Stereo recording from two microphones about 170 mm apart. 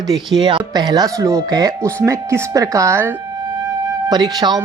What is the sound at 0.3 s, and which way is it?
Speech, 25° right (ahead or behind).